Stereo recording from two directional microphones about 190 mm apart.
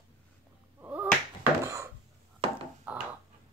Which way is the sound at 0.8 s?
10° right (ahead or behind).